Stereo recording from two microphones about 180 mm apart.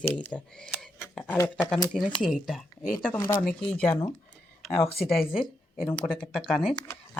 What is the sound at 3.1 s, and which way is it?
Speech, 10° left (ahead or behind).